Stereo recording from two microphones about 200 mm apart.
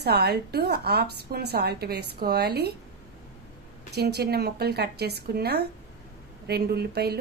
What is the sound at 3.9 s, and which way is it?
A woman's voice, 55° right (ahead or behind).